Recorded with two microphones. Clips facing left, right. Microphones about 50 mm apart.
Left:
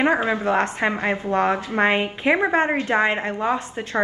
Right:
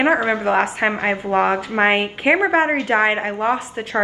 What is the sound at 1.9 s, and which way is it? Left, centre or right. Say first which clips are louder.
Speech: right 3 dB; right.